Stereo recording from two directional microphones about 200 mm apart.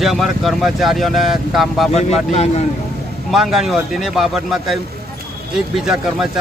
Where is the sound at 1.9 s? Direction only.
30° left (ahead or behind).